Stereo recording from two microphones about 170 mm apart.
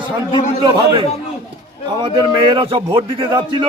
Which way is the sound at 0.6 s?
25° right (ahead or behind).